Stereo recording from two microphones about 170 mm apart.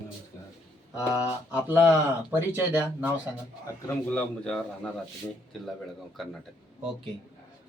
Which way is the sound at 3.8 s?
5° left (ahead or behind).